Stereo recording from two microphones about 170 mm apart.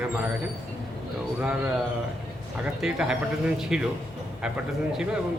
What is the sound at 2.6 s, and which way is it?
Speech, 5° right (ahead or behind).